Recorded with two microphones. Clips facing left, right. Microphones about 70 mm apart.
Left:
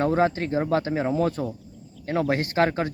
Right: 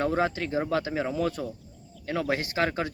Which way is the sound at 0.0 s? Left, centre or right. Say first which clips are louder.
Left 4 dB; left.